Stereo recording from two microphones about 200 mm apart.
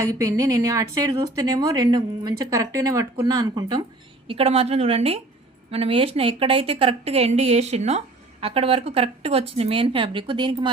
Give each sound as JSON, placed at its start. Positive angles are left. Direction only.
{"t": 0.0, "sound": "a woman's voice", "side_deg": -15}